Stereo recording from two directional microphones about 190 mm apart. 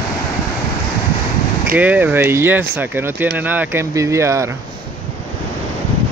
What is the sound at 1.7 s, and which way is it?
Speech, 10° right (ahead or behind).